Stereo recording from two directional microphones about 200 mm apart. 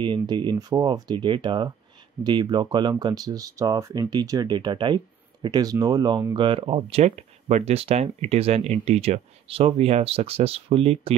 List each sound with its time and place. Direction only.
0.0 s speech: 25° right (ahead or behind)